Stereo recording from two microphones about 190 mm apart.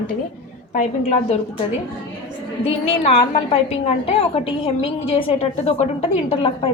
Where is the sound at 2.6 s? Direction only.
35° left (ahead or behind).